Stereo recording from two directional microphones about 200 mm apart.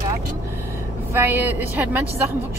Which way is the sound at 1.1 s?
10° right (ahead or behind).